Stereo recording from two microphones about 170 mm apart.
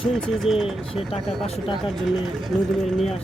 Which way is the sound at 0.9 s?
35° left (ahead or behind).